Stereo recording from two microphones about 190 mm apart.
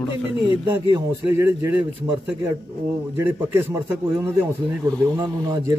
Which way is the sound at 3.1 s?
15° right (ahead or behind).